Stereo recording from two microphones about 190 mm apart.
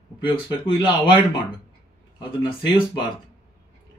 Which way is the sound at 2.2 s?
25° left (ahead or behind).